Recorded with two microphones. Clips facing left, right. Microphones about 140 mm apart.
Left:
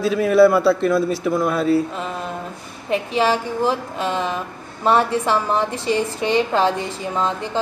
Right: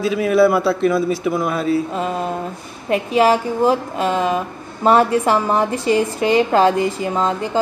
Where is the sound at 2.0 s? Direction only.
35° right (ahead or behind).